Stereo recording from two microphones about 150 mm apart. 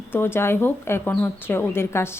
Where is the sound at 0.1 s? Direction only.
15° left (ahead or behind).